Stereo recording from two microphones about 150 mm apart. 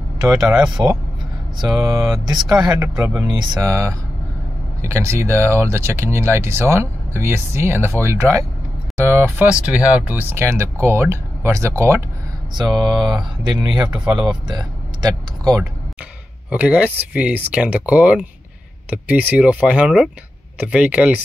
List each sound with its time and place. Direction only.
0.3 s speech: 25° right (ahead or behind)
12.5 s speech: 30° right (ahead or behind)
13.8 s speech: 5° right (ahead or behind)
14.5 s speech: 30° right (ahead or behind)
16.4 s speech: 10° right (ahead or behind)